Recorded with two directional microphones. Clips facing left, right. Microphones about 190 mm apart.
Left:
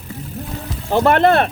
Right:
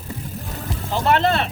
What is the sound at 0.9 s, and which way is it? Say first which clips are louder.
Speech: left 6 dB; 55° left (ahead or behind).